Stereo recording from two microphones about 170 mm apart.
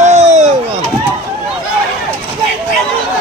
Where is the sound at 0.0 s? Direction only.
40° right (ahead or behind).